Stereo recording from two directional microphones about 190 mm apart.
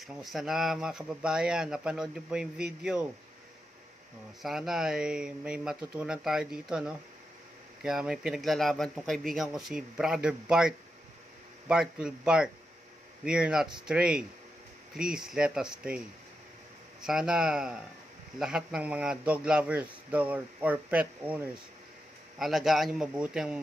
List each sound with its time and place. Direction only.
0.0 s speech: centre (ahead or behind)
4.4 s speech: centre (ahead or behind)
17.0 s a man's voice: 5° right (ahead or behind)
22.4 s speech: centre (ahead or behind)